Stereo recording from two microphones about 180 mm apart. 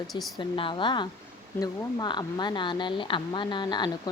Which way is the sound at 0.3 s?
25° left (ahead or behind).